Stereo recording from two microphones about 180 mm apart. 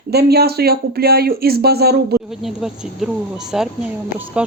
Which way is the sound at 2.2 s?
Centre (ahead or behind).